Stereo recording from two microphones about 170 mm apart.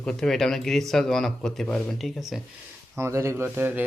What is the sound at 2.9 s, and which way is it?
Speech, 15° right (ahead or behind).